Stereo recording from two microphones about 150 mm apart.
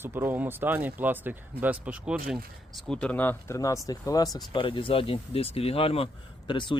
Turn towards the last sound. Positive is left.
turn(degrees=30)  # may be behind; listen again after turning